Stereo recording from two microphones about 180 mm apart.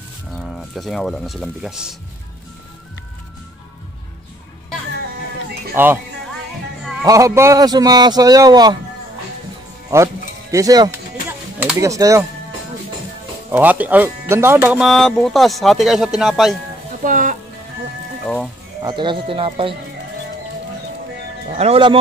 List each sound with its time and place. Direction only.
0.3 s speech: 5° left (ahead or behind)
5.8 s speech: 10° right (ahead or behind)
7.0 s a man's voice: 15° right (ahead or behind)
9.9 s a man's voice: 15° right (ahead or behind)
13.5 s speech: 10° right (ahead or behind)
17.0 s music: 45° right (ahead or behind)
18.2 s music: 5° left (ahead or behind)
18.8 s a man's voice: 25° right (ahead or behind)
21.5 s speech: 35° right (ahead or behind)